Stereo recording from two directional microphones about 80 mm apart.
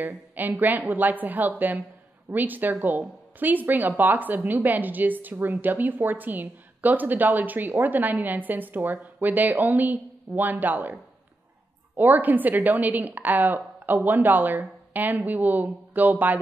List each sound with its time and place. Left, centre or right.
0.0 s a woman's voice: right
12.0 s a woman's voice: right